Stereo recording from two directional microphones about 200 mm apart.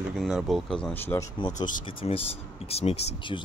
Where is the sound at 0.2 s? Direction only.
Centre (ahead or behind).